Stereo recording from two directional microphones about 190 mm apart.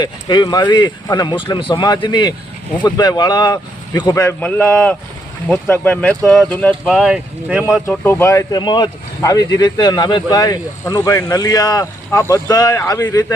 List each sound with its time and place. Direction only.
0.0 s speech: 20° left (ahead or behind); by 7.6 s 5° right (ahead or behind)
7.9 s speech: 15° left (ahead or behind)